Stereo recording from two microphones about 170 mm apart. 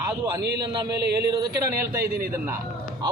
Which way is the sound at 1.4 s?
20° right (ahead or behind).